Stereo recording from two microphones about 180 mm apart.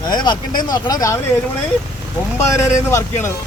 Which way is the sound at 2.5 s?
15° left (ahead or behind).